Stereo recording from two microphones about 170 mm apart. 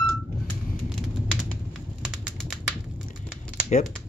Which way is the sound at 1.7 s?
5° right (ahead or behind).